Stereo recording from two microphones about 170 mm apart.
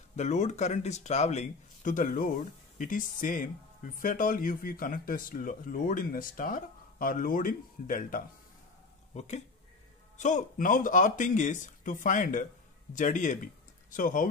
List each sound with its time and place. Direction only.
0.1 s speech: 45° left (ahead or behind)
10.1 s speech: 45° left (ahead or behind)